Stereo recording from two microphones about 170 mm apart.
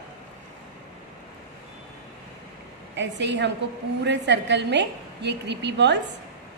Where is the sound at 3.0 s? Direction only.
90° right.